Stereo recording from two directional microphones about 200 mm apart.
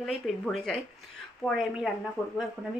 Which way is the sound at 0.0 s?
Centre (ahead or behind).